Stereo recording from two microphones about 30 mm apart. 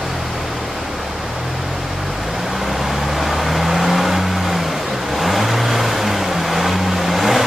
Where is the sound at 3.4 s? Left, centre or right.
Centre.